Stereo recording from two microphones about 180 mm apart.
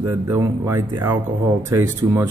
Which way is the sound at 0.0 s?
15° right (ahead or behind).